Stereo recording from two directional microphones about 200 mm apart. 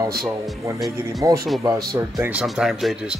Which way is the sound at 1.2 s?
15° right (ahead or behind).